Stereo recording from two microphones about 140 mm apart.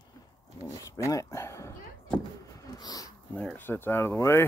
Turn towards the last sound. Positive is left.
turn(degrees=20)  # may be behind; listen again after turning